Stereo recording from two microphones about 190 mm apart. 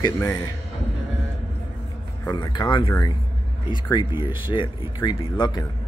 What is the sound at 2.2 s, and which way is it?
Speech, 20° left (ahead or behind).